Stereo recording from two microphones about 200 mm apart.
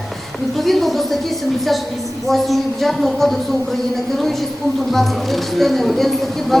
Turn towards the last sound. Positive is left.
turn(degrees=0)  # may be behind; listen again after turning